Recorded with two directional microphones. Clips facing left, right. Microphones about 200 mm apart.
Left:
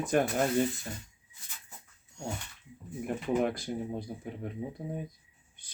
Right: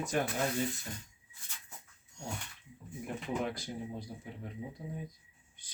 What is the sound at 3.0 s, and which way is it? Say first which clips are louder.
Speech: left 7 dB; 55° left (ahead or behind).